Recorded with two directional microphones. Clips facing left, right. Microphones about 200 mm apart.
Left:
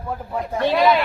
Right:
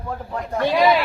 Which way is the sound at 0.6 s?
10° right (ahead or behind).